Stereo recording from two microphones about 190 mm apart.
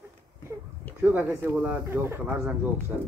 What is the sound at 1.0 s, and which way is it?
Speech, 10° right (ahead or behind).